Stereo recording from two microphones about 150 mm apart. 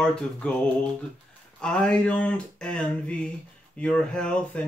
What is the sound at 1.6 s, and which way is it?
Mantra, 5° left (ahead or behind).